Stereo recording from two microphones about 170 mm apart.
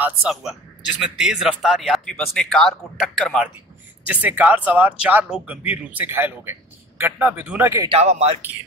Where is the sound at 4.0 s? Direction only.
10° right (ahead or behind).